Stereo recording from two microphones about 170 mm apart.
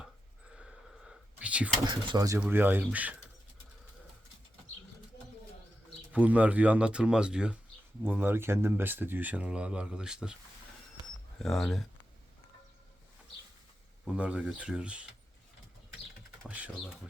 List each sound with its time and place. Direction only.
0.5 s a sound: 5° right (ahead or behind)
1.9 s speech: 20° right (ahead or behind)
6.1 s speech: 10° right (ahead or behind)
11.3 s speech: centre (ahead or behind)
14.0 s speech: 5° right (ahead or behind)
16.5 s speech: 5° right (ahead or behind)